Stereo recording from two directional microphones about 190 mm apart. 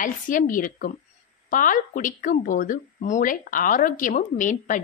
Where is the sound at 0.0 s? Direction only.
45° left (ahead or behind).